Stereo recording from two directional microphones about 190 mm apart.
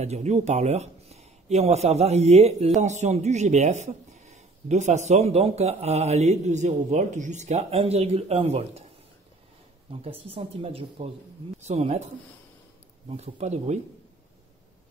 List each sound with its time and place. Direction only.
0.0 s speech: 35° right (ahead or behind)
10.0 s speech: 30° right (ahead or behind)
13.1 s speech: 35° right (ahead or behind)